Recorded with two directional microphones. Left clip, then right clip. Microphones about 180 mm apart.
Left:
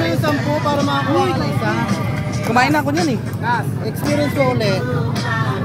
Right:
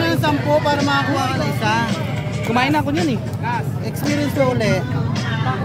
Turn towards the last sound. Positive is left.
turn(degrees=-10)  # may be behind; listen again after turning